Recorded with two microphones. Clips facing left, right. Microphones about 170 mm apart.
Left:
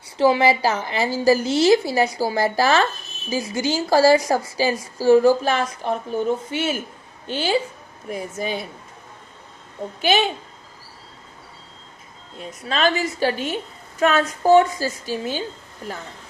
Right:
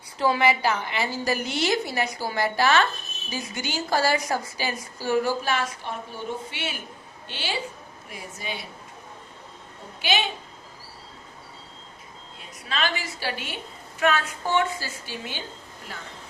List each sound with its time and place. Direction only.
0.2 s a woman's voice: 30° left (ahead or behind)
10.0 s a woman's voice: 50° left (ahead or behind)
12.6 s a woman's voice: 40° left (ahead or behind)